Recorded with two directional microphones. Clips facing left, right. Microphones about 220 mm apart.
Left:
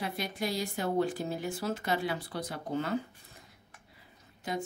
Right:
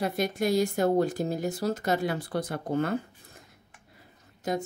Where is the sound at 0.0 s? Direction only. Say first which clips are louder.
Right 7 dB; 45° right (ahead or behind).